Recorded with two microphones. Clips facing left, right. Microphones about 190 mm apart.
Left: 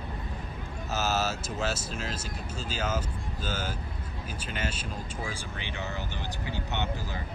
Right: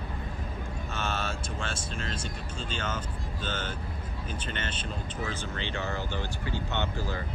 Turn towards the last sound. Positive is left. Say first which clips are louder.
# right 1 dB
turn(degrees=15)  # may be behind; listen again after turning